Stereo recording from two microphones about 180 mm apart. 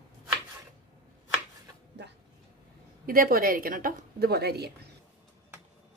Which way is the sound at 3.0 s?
55° right (ahead or behind).